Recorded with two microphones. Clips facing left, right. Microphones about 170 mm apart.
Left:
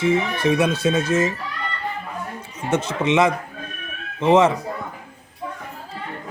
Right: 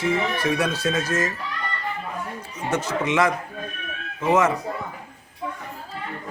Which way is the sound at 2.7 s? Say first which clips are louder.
Left 4 dB; 25° left (ahead or behind).